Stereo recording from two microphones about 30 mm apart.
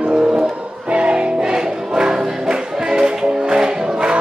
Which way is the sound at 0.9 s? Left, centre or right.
Right.